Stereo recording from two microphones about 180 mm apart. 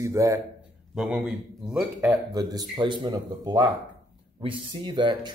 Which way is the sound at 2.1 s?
20° right (ahead or behind).